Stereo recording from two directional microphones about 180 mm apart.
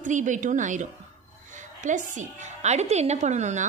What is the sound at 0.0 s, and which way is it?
A woman's voice, 45° right (ahead or behind).